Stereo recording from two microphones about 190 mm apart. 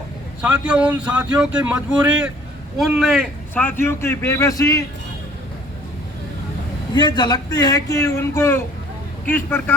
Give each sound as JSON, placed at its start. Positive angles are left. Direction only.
{"t": 0.4, "sound": "a man's voice", "side_deg": -5}
{"t": 6.9, "sound": "a man's voice", "side_deg": 20}